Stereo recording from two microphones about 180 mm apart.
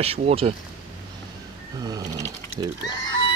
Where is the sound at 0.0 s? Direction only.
35° right (ahead or behind).